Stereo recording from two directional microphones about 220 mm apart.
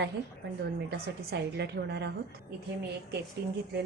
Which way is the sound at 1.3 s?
50° right (ahead or behind).